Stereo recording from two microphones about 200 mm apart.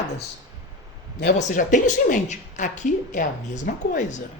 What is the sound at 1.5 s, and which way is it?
A woman's voice, 40° left (ahead or behind).